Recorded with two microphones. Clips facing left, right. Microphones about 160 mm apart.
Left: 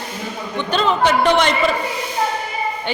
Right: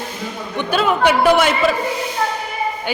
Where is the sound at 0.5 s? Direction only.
10° right (ahead or behind).